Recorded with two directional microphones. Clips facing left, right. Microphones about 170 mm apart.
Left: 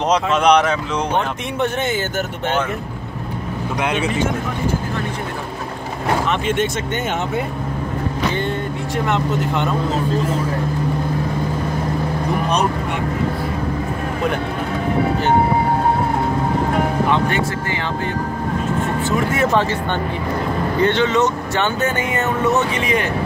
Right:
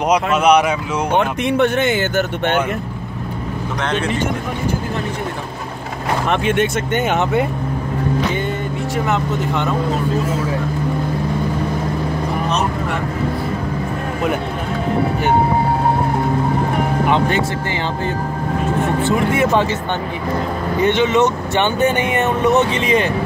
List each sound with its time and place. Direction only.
0.1 s speech: 10° right (ahead or behind)
1.1 s speech: 70° right (ahead or behind)
3.8 s a man's voice: 10° left (ahead or behind)
6.3 s speech: 60° right (ahead or behind)
8.9 s speech: 5° right (ahead or behind)
20.8 s speech: 15° right (ahead or behind)